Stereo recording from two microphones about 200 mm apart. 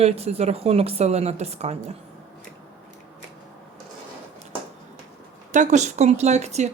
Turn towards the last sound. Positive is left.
turn(degrees=-35)  # may be behind; listen again after turning